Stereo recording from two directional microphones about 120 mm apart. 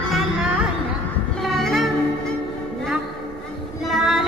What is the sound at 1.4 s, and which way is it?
Train, centre (ahead or behind).